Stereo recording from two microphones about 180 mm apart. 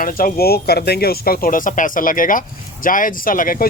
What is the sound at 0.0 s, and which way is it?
Speech, 50° left (ahead or behind).